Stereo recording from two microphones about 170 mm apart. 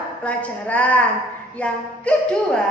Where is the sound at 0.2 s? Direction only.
10° left (ahead or behind).